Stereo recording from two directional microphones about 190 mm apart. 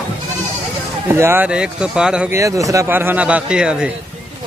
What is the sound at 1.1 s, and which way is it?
Speech, 10° right (ahead or behind).